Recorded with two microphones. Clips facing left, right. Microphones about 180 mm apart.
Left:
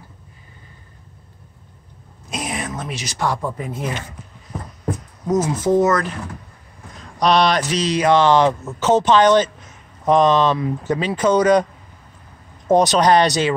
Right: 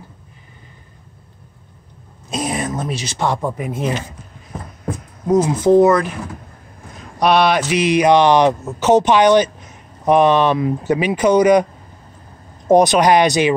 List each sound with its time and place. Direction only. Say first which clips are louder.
2.2 s speech: right 5 dB; 30° right (ahead or behind); by 3.9 s 15° right (ahead or behind)
5.8 s speech: right 5 dB; 15° right (ahead or behind)
7.2 s speech: right 2 dB; 5° right (ahead or behind)
12.6 s speech: right 3 dB; 10° right (ahead or behind)